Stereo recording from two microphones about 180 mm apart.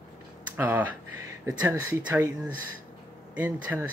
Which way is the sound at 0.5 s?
10° right (ahead or behind).